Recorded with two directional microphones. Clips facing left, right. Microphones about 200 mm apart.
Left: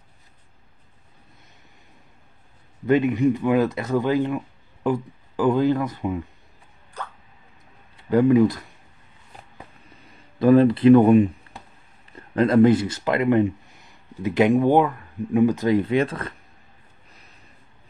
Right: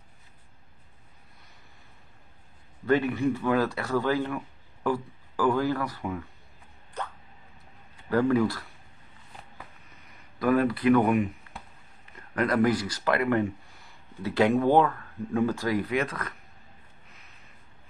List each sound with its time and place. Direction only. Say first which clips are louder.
2.9 s speech: left 6 dB; 20° left (ahead or behind)
8.1 s speech: left 7 dB; 20° left (ahead or behind)
10.0 s speech: left 8 dB; 30° left (ahead or behind)